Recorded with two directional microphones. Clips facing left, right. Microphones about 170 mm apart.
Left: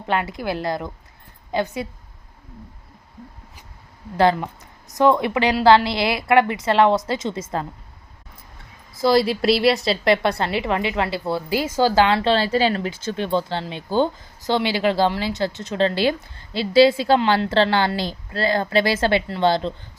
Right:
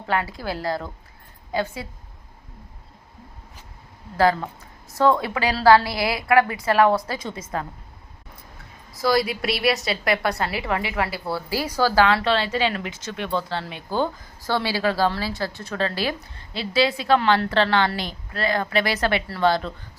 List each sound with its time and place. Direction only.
0.1 s a woman's voice: 20° left (ahead or behind)
4.2 s a woman's voice: 20° left (ahead or behind)
9.0 s a woman's voice: 25° left (ahead or behind)